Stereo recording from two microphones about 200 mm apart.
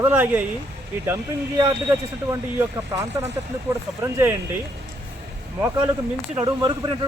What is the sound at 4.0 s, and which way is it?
Speech, 10° right (ahead or behind).